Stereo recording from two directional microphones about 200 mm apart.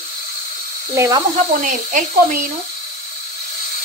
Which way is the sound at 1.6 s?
40° right (ahead or behind).